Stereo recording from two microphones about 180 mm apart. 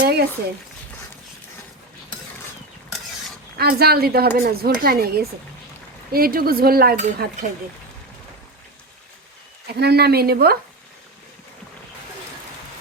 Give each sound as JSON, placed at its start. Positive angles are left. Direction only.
{"t": 0.0, "sound": "a sound", "side_deg": -60}
{"t": 3.6, "sound": "speech", "side_deg": -60}
{"t": 9.7, "sound": "speech", "side_deg": -65}